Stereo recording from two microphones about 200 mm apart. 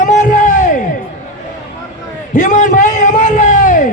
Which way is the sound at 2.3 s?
40° left (ahead or behind).